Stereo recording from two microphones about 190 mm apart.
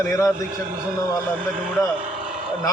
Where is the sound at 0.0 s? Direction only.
15° left (ahead or behind).